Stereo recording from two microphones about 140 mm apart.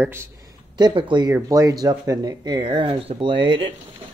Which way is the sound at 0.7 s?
30° right (ahead or behind).